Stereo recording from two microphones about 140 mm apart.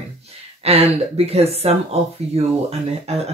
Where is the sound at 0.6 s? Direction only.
45° right (ahead or behind).